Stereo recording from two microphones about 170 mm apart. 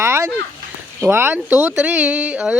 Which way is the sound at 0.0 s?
15° right (ahead or behind).